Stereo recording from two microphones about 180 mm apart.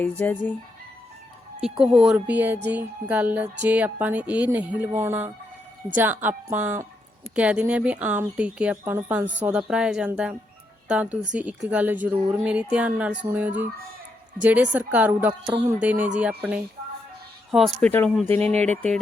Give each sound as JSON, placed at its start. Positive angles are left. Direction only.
{"t": 0.0, "sound": "speech", "side_deg": 10}
{"t": 1.6, "sound": "speech", "side_deg": -5}
{"t": 15.3, "sound": "a sound", "side_deg": -25}
{"t": 15.8, "sound": "speech", "side_deg": -10}